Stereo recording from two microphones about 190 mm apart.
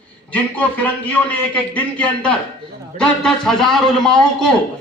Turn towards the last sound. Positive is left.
turn(degrees=0)  # may be behind; listen again after turning